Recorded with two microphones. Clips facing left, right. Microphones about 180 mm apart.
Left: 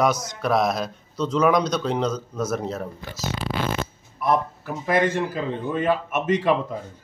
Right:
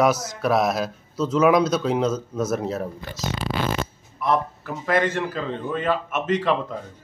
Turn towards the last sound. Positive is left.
turn(degrees=10)  # may be behind; listen again after turning